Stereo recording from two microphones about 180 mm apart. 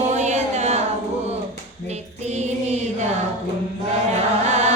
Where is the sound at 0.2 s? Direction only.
40° right (ahead or behind).